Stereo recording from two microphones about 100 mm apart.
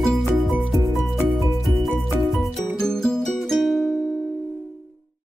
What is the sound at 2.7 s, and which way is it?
Music, 5° left (ahead or behind).